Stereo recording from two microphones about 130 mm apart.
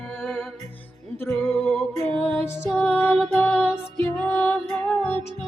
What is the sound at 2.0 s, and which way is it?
Music, 50° right (ahead or behind).